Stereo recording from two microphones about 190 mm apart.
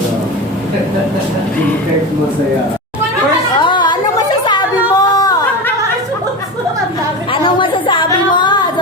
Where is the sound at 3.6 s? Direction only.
25° left (ahead or behind).